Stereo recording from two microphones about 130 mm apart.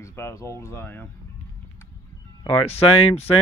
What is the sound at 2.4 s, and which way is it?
Speech, 50° left (ahead or behind).